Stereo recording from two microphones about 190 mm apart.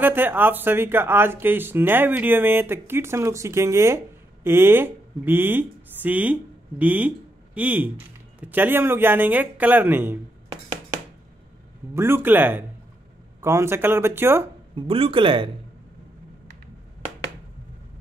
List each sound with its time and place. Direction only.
0.0 s speech: 10° right (ahead or behind)
11.9 s speech: 10° right (ahead or behind)
14.8 s speech: 30° right (ahead or behind)